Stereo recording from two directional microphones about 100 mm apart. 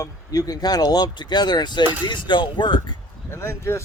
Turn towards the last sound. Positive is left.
turn(degrees=30)  # may be behind; listen again after turning